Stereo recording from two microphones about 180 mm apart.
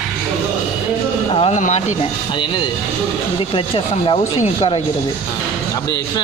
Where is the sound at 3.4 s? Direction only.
30° left (ahead or behind).